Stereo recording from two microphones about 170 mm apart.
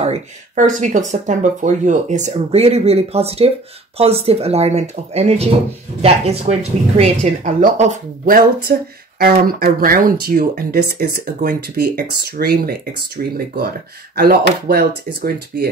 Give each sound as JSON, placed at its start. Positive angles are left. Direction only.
{"t": 0.0, "sound": "speech", "side_deg": -40}